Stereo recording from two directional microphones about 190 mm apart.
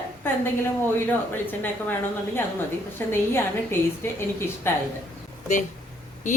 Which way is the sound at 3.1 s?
10° left (ahead or behind).